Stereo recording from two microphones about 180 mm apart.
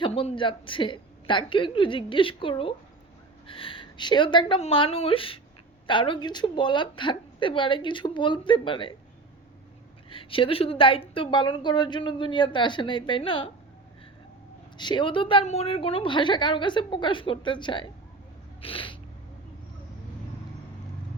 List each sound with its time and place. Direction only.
0.0 s a woman's voice: 35° left (ahead or behind)
10.1 s a woman's voice: 30° left (ahead or behind)
14.8 s a woman's voice: 25° left (ahead or behind)